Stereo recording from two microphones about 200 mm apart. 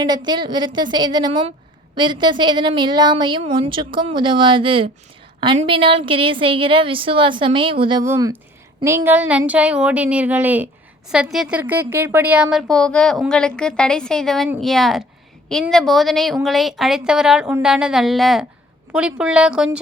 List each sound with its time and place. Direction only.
0.3 s a woman's voice: 20° right (ahead or behind); by 19.8 s 5° right (ahead or behind)